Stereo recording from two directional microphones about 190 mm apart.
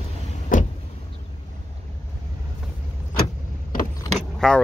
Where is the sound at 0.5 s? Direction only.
45° left (ahead or behind).